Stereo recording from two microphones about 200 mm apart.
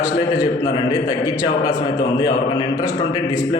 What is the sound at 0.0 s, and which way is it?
A man's voice, 15° left (ahead or behind).